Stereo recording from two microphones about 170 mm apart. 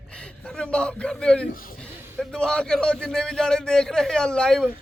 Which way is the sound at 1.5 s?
55° left (ahead or behind).